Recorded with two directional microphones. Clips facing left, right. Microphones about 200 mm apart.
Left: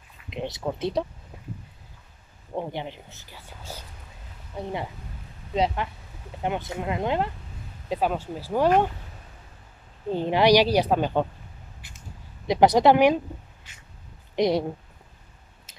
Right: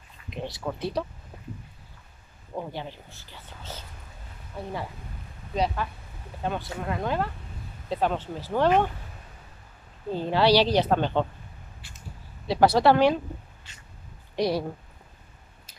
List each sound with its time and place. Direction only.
0.3 s speech: 20° left (ahead or behind)
2.5 s speech: 20° left (ahead or behind)
7.9 s speech: 10° left (ahead or behind)
10.1 s speech: 15° left (ahead or behind)
12.4 s speech: 15° left (ahead or behind)
14.3 s speech: 20° left (ahead or behind)